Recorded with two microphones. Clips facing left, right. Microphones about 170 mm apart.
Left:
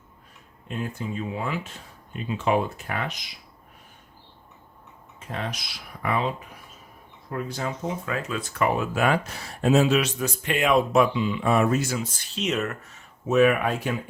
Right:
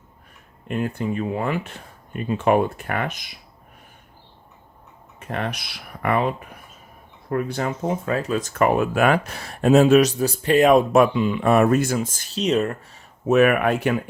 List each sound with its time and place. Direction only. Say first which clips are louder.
0.7 s speech: right 6 dB; 60° right (ahead or behind)
5.2 s speech: right 5 dB; 60° right (ahead or behind)
8.0 s speech: right 6 dB; 40° right (ahead or behind)
13.2 s speech: right 3 dB; 60° right (ahead or behind)